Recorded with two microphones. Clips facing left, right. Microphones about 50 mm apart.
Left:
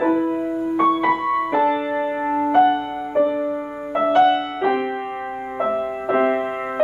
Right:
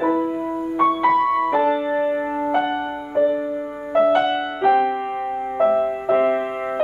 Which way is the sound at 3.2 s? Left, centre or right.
Centre.